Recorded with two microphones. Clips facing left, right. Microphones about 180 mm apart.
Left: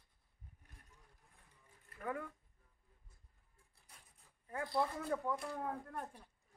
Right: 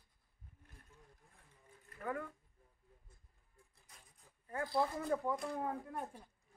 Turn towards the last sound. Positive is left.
turn(degrees=-10)  # may be behind; listen again after turning